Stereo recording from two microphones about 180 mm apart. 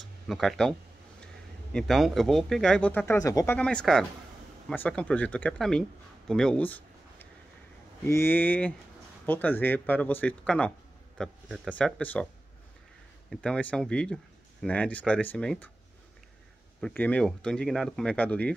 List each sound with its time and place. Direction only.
0.3 s speech: centre (ahead or behind)
3.1 s speech: 20° left (ahead or behind)
3.5 s speech: 5° left (ahead or behind)
13.3 s speech: 5° left (ahead or behind)
16.8 s speech: 10° left (ahead or behind)